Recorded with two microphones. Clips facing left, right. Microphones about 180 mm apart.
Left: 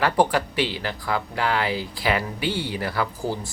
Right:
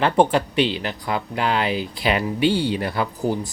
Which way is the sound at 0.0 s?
25° right (ahead or behind).